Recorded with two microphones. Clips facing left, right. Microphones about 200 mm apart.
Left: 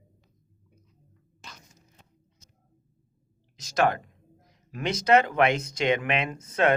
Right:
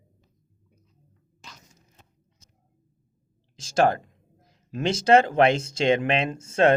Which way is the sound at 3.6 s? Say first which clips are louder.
Right 3 dB; 30° right (ahead or behind).